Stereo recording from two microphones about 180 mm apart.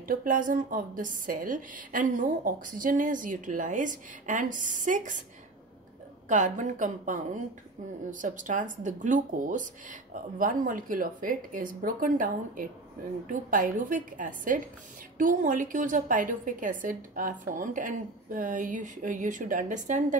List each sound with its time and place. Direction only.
0.0 s a woman's voice: 50° right (ahead or behind)
6.2 s a woman's voice: 45° right (ahead or behind)